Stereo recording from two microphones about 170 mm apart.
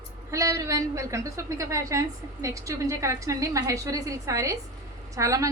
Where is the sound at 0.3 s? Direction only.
20° right (ahead or behind).